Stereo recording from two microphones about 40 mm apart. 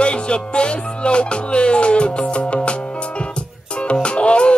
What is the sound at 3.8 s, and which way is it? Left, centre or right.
Music, left.